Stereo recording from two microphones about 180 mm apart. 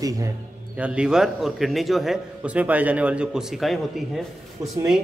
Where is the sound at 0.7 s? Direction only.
5° right (ahead or behind).